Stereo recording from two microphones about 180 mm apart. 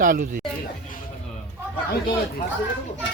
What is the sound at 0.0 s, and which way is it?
Speech, 50° right (ahead or behind).